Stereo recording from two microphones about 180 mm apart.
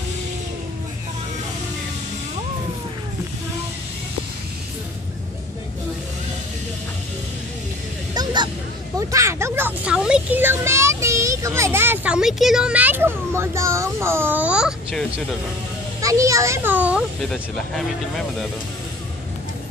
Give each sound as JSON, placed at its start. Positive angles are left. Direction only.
{"t": 8.1, "sound": "a sound", "side_deg": -25}
{"t": 9.1, "sound": "a child's voice", "side_deg": -15}
{"t": 16.0, "sound": "a child's voice", "side_deg": -20}